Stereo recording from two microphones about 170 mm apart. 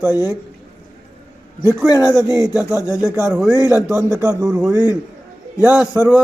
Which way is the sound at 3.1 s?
15° right (ahead or behind).